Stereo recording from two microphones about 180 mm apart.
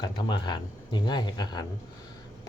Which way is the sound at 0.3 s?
25° left (ahead or behind).